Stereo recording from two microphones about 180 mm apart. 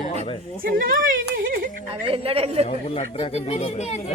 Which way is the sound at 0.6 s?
50° right (ahead or behind).